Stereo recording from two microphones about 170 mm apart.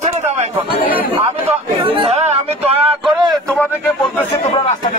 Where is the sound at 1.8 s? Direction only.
35° right (ahead or behind).